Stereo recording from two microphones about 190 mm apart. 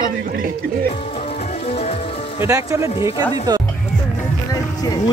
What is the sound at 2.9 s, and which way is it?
Speech, 30° left (ahead or behind).